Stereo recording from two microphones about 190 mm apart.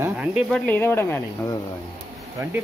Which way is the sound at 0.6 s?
10° left (ahead or behind).